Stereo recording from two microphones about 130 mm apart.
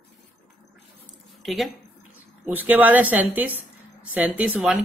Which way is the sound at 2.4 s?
15° right (ahead or behind).